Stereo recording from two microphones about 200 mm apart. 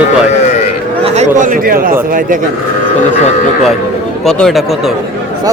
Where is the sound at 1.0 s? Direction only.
35° right (ahead or behind).